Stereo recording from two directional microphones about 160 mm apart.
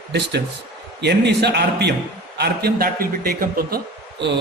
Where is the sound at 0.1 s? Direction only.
90° right; by 3.8 s 70° right (ahead or behind).